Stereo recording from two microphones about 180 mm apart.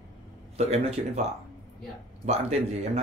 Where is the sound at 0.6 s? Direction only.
35° right (ahead or behind).